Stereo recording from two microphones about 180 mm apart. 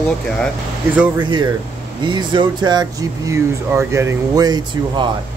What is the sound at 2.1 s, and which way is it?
Speech, 25° right (ahead or behind).